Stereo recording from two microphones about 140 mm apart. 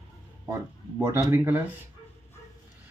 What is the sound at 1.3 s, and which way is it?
Speech, 20° right (ahead or behind).